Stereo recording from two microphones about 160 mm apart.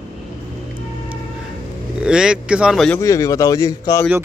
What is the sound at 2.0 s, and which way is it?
Speech, 5° right (ahead or behind).